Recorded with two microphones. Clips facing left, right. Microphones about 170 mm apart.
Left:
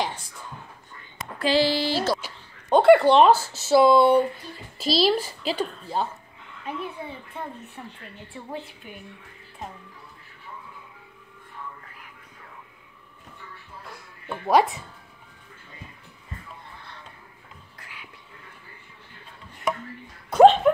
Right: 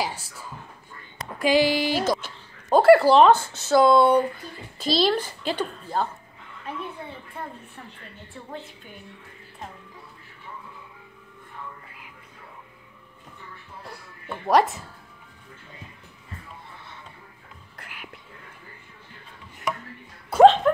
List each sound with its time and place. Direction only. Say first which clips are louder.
0.0 s a sound: even; 5° right (ahead or behind)
1.4 s music: right 2 dB; 15° right (ahead or behind)
2.7 s a woman's voice: even; 5° right (ahead or behind)
14.2 s speech: even; centre (ahead or behind)
17.7 s whispering: right 4 dB; 60° right (ahead or behind)
20.2 s speech: even; centre (ahead or behind)